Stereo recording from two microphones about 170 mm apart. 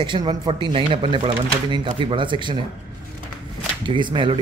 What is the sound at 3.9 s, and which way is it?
Speech, 30° right (ahead or behind).